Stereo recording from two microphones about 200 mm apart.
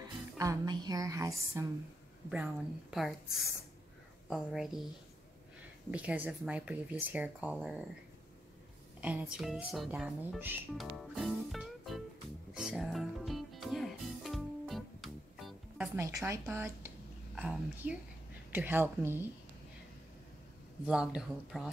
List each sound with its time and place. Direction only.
0.4 s speech: 20° right (ahead or behind); by 4.7 s centre (ahead or behind)
5.9 s speech: 5° right (ahead or behind)
9.0 s speech: 5° right (ahead or behind)
12.5 s music: centre (ahead or behind)
16.3 s speech: 10° right (ahead or behind)
20.8 s speech: 5° right (ahead or behind)